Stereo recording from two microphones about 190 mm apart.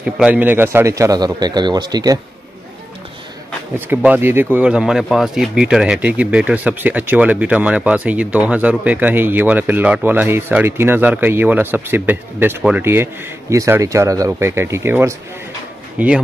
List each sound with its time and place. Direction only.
0.0 s speech: 5° right (ahead or behind)
3.7 s speech: 10° right (ahead or behind)